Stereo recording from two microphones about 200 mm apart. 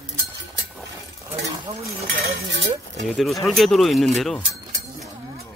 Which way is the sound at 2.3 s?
70° right (ahead or behind).